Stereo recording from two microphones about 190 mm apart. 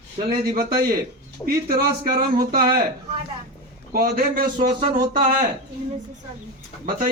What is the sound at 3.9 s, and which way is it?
A man's voice, 50° right (ahead or behind).